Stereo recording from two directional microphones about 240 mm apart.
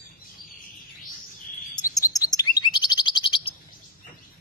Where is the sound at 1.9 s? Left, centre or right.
Centre.